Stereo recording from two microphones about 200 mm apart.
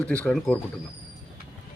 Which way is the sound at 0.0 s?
5° left (ahead or behind).